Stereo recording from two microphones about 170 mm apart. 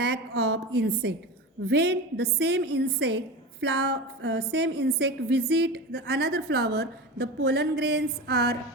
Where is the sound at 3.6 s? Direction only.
90° right.